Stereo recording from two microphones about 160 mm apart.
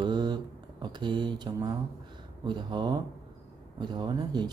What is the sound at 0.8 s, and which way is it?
Speech, 30° right (ahead or behind).